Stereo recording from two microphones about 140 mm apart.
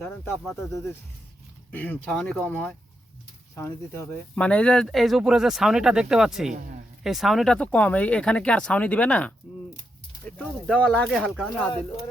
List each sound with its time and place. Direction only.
0.0 s speech: 15° left (ahead or behind)
10.3 s speech: 10° left (ahead or behind)